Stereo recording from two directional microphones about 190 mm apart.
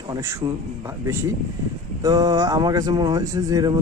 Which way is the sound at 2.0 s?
20° right (ahead or behind).